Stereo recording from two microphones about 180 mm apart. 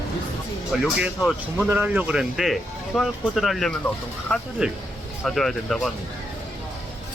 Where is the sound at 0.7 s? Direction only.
Centre (ahead or behind).